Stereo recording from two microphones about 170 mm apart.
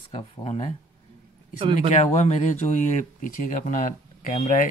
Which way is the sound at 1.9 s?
45° left (ahead or behind).